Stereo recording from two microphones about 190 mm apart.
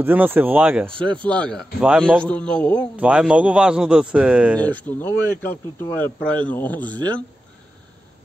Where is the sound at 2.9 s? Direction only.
5° right (ahead or behind).